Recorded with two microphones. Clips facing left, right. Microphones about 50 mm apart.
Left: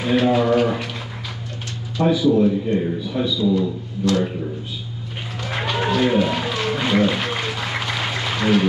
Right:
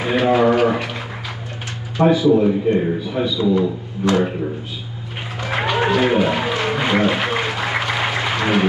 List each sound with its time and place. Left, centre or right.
0.0 s a man's voice: centre
2.0 s a man's voice: right
5.4 s a sound: right